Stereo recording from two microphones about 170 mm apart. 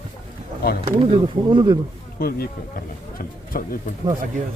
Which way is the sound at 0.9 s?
30° right (ahead or behind).